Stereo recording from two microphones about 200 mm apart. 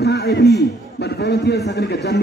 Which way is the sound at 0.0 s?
55° left (ahead or behind).